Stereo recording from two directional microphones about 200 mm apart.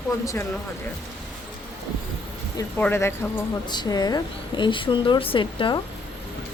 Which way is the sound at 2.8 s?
10° left (ahead or behind).